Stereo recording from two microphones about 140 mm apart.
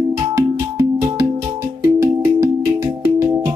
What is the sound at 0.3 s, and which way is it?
Music, 20° right (ahead or behind).